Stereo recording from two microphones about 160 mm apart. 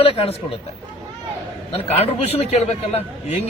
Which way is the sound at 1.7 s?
40° left (ahead or behind).